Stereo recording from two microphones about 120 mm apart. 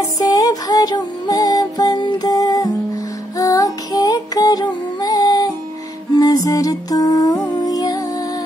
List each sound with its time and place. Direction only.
0.0 s music: 30° left (ahead or behind)